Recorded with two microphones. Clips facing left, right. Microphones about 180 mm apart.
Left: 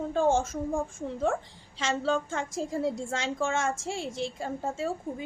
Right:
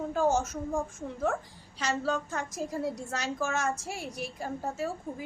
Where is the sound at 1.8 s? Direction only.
25° left (ahead or behind).